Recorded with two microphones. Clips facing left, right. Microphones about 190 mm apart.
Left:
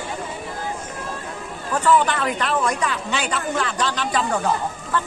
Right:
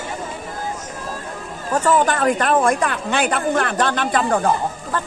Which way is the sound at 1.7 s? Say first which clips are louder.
Right 1 dB; 45° right (ahead or behind).